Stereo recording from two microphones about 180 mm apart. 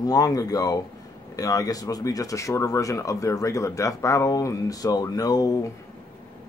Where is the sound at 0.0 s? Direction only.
20° left (ahead or behind).